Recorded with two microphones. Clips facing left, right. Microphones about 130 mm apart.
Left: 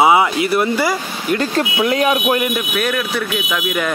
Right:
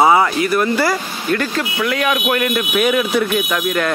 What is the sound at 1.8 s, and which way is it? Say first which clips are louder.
Speech: left 2 dB; 30° left (ahead or behind).